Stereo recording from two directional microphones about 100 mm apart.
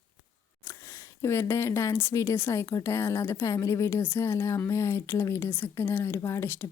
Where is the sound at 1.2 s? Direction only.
30° left (ahead or behind).